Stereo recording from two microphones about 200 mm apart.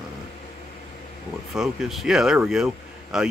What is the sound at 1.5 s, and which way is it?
Speech, centre (ahead or behind).